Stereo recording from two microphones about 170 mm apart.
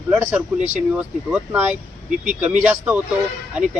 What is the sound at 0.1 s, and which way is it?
Speech, 10° right (ahead or behind).